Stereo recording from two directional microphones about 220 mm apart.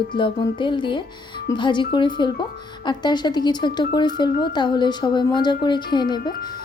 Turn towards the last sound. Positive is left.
turn(degrees=20)  # may be behind; listen again after turning